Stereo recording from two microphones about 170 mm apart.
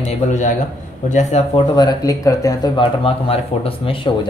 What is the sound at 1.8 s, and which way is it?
Speech, 20° left (ahead or behind).